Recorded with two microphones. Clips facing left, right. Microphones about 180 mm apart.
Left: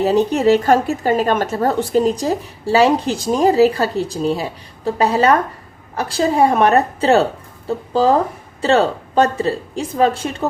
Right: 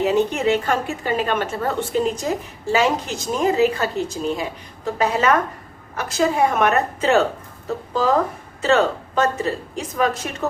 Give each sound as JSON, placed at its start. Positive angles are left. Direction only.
{"t": 0.0, "sound": "a woman's voice", "side_deg": 35}
{"t": 8.6, "sound": "a woman's voice", "side_deg": 35}